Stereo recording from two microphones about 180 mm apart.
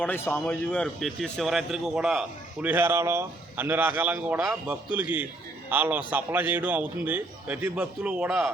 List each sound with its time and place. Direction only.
0.0 s a man's voice: 10° left (ahead or behind)